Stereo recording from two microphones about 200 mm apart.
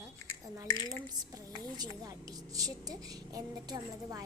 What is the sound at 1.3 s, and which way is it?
Music, 20° right (ahead or behind).